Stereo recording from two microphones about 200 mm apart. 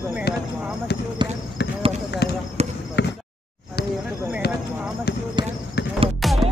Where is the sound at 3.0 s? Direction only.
60° left (ahead or behind).